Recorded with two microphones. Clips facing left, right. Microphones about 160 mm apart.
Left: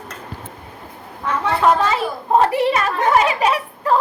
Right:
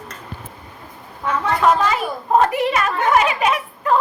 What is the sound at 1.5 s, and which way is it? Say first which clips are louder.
A woman's voice: left 1 dB; 30° left (ahead or behind).